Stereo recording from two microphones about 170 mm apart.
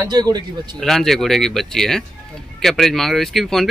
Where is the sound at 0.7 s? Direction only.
Centre (ahead or behind).